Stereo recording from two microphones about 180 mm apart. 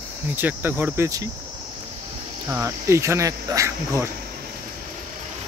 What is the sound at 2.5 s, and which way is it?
Speech, 15° right (ahead or behind).